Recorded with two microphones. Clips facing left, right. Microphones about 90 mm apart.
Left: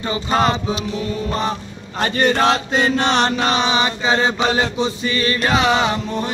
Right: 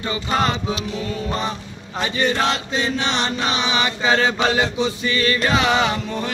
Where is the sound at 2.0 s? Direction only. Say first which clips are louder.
Left 4 dB; 55° left (ahead or behind).